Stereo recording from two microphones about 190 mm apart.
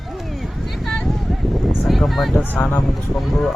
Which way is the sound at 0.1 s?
Centre (ahead or behind).